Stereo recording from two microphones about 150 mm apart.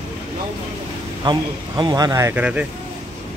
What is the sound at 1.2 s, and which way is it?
Speech, 30° right (ahead or behind).